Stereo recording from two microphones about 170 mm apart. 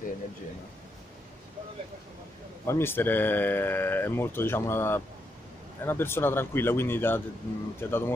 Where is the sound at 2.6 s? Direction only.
15° left (ahead or behind).